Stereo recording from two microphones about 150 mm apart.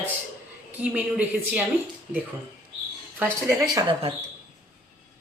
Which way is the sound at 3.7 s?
25° right (ahead or behind).